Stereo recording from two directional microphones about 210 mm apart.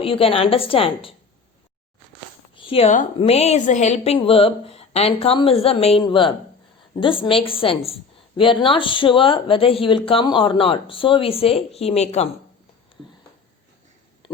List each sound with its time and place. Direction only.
0.0 s speech: 25° left (ahead or behind)
2.6 s speech: 25° left (ahead or behind)